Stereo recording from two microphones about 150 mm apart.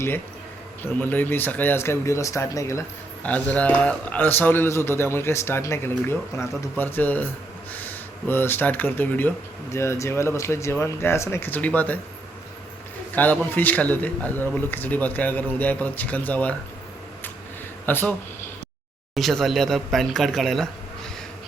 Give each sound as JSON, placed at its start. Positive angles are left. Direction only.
{"t": 0.8, "sound": "speech", "side_deg": 15}
{"t": 3.2, "sound": "speech", "side_deg": 10}
{"t": 8.3, "sound": "speech", "side_deg": 15}
{"t": 13.1, "sound": "speech", "side_deg": 10}
{"t": 17.8, "sound": "speech", "side_deg": 10}
{"t": 19.1, "sound": "speech", "side_deg": 0}